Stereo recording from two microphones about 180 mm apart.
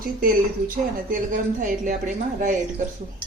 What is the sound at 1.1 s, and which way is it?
Speech, 45° right (ahead or behind).